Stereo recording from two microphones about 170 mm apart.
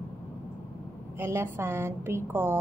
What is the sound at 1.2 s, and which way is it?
A woman's voice, 15° right (ahead or behind).